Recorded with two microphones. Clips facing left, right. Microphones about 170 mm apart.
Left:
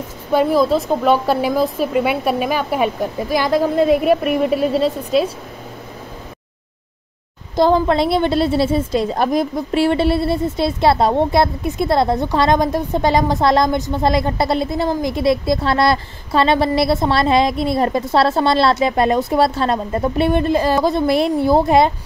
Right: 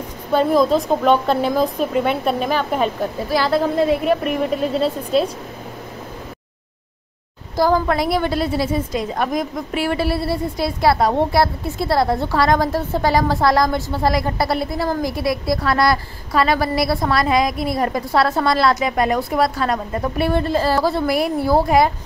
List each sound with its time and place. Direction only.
0.3 s speech: 10° left (ahead or behind)
7.5 s a woman's voice: 25° left (ahead or behind)